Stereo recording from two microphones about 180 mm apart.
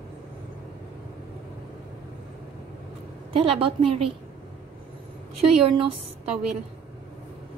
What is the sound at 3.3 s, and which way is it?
Speech, 30° right (ahead or behind).